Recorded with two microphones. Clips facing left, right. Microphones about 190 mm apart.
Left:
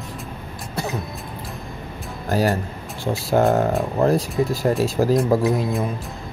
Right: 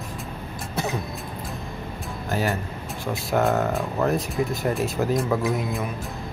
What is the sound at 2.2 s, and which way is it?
Speech, 35° left (ahead or behind).